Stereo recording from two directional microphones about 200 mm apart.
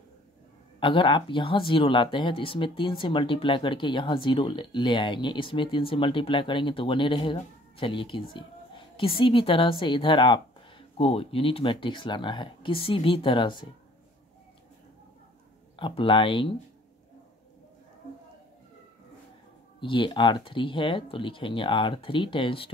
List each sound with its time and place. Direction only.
0.7 s speech: 25° left (ahead or behind)
15.7 s speech: 25° left (ahead or behind)
19.8 s speech: 25° left (ahead or behind)